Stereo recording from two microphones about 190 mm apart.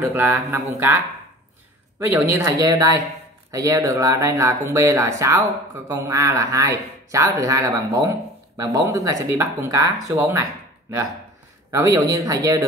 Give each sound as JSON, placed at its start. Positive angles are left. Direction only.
{"t": 0.0, "sound": "speech", "side_deg": -10}
{"t": 11.7, "sound": "speech", "side_deg": -15}